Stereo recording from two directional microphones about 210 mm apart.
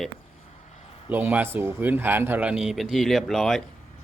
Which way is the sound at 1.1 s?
10° right (ahead or behind).